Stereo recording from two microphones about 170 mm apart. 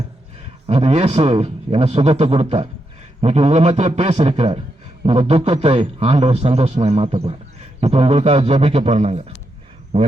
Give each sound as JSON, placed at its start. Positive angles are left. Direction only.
{"t": 0.7, "sound": "a man's voice", "side_deg": -35}